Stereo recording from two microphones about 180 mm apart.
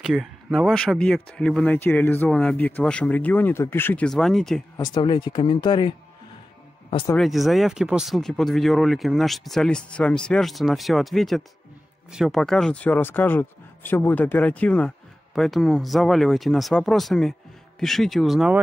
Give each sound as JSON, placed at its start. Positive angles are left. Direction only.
{"t": 0.0, "sound": "speech", "side_deg": 0}
{"t": 4.7, "sound": "speech", "side_deg": 25}
{"t": 7.2, "sound": "speech", "side_deg": 0}